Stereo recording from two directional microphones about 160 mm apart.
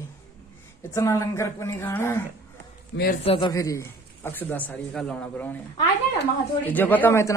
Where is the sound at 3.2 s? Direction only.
35° left (ahead or behind).